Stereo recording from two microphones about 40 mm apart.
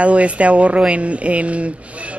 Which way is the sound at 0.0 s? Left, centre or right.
Right.